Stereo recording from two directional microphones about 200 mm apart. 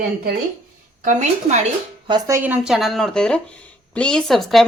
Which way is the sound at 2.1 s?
15° right (ahead or behind).